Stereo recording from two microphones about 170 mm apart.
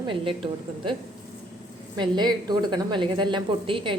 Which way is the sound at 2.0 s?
25° right (ahead or behind).